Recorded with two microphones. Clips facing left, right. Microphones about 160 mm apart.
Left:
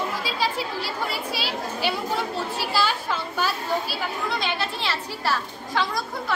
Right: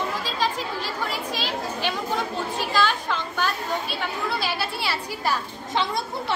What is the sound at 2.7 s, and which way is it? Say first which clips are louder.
Speech: right 2 dB; 10° left (ahead or behind).